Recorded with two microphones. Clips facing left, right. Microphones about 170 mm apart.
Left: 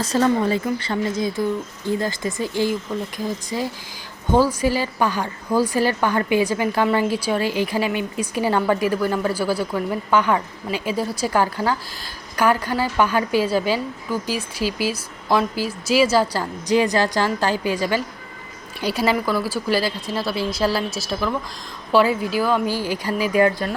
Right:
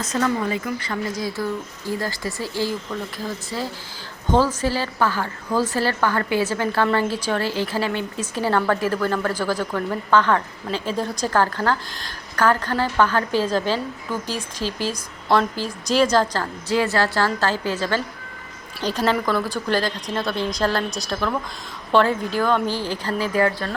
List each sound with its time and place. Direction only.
0.0 s a woman's voice: 30° left (ahead or behind); by 23.7 s 15° left (ahead or behind)